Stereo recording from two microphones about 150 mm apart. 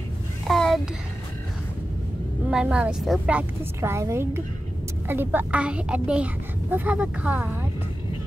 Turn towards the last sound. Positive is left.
turn(degrees=-10)  # may be behind; listen again after turning